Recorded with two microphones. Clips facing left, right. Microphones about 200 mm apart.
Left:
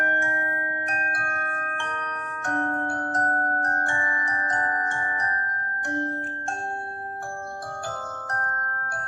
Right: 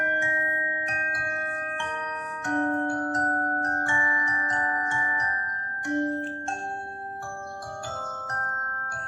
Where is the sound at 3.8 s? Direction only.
50° left (ahead or behind).